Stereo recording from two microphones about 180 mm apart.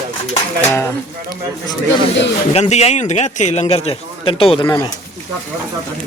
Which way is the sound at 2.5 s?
35° left (ahead or behind).